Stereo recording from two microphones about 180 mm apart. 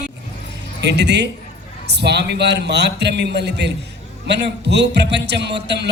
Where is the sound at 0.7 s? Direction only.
70° right (ahead or behind).